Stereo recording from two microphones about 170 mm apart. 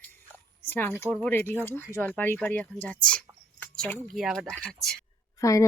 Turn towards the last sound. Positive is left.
turn(degrees=20)  # may be behind; listen again after turning